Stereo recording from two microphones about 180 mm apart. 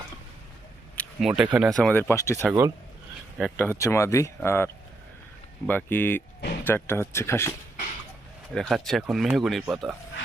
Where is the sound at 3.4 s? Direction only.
5° left (ahead or behind).